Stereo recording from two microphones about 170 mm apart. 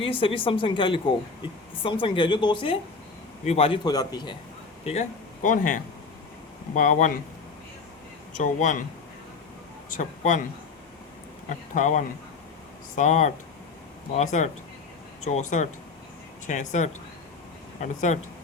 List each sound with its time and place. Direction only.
0.0 s a woman's voice: 30° left (ahead or behind)
4.9 s a man's voice: 45° left (ahead or behind)
8.4 s a man's voice: 50° left (ahead or behind)
9.9 s a man's voice: 50° left (ahead or behind)
11.4 s a man's voice: 50° left (ahead or behind)